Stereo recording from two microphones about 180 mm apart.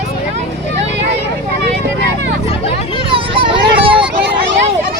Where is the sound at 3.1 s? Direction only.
30° right (ahead or behind).